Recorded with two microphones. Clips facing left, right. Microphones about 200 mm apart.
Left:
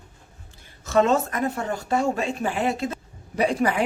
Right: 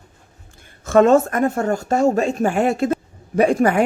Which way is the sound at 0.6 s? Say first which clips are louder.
Right 7 dB; 50° right (ahead or behind).